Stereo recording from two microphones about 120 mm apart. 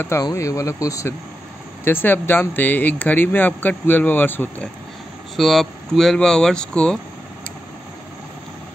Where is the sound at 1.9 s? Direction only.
15° left (ahead or behind).